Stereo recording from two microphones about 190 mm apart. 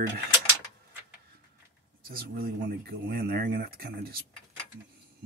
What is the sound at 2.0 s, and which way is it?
Speech, 50° right (ahead or behind).